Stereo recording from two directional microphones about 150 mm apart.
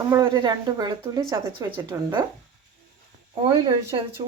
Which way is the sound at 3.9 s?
35° right (ahead or behind).